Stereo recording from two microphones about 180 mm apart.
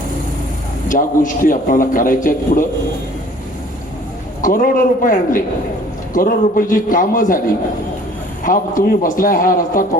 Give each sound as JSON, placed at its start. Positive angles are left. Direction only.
{"t": 0.9, "sound": "a man's voice", "side_deg": 45}
{"t": 4.4, "sound": "a man's voice", "side_deg": 50}
{"t": 8.4, "sound": "a man's voice", "side_deg": 50}